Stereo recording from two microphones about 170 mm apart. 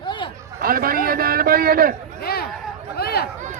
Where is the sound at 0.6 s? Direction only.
60° right (ahead or behind).